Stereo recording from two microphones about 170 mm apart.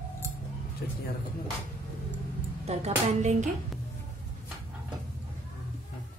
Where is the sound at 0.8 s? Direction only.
70° left (ahead or behind).